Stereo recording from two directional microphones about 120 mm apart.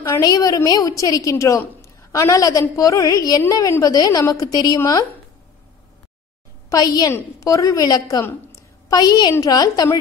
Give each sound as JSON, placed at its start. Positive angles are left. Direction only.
{"t": 0.1, "sound": "a woman's voice", "side_deg": 30}
{"t": 6.7, "sound": "a woman's voice", "side_deg": 35}
{"t": 8.3, "sound": "a sound", "side_deg": 25}
{"t": 9.3, "sound": "a woman's voice", "side_deg": 30}